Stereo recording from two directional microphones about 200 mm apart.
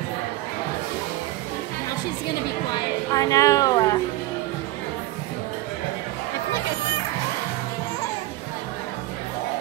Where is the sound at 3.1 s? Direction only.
15° left (ahead or behind).